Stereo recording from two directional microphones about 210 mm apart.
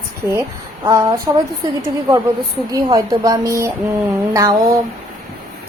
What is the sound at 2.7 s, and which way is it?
Speech, 20° right (ahead or behind).